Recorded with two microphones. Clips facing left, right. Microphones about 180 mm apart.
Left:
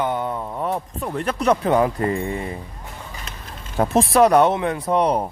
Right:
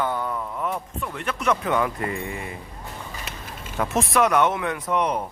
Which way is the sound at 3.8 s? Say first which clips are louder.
Left 6 dB; 35° left (ahead or behind).